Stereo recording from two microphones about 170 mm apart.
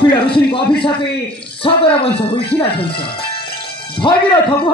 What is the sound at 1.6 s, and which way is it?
Speech, 30° left (ahead or behind).